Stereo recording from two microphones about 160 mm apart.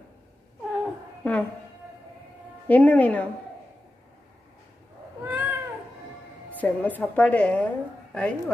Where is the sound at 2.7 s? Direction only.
10° left (ahead or behind).